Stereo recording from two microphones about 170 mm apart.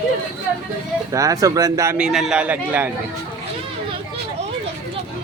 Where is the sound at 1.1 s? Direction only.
20° right (ahead or behind).